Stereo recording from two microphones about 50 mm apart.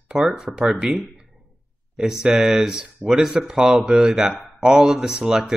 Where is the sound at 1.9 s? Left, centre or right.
Centre.